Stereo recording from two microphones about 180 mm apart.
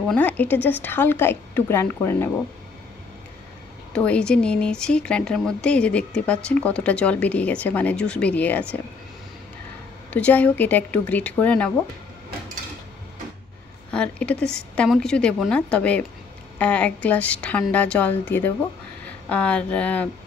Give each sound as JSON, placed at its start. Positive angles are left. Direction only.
{"t": 0.1, "sound": "speech", "side_deg": 10}
{"t": 3.9, "sound": "speech", "side_deg": 5}
{"t": 10.1, "sound": "speech", "side_deg": 10}
{"t": 13.9, "sound": "a woman's voice", "side_deg": 5}